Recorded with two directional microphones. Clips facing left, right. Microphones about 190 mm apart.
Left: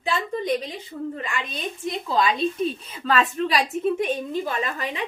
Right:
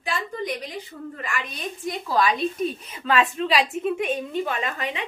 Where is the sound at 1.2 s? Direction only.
25° left (ahead or behind).